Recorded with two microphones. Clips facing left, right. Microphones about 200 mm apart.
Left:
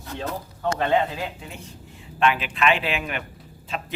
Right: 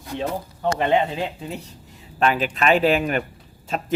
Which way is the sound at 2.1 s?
40° right (ahead or behind).